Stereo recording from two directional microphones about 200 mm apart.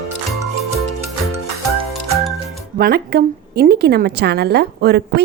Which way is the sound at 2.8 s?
50° right (ahead or behind).